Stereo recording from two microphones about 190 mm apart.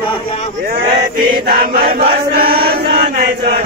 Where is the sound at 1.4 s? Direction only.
50° right (ahead or behind).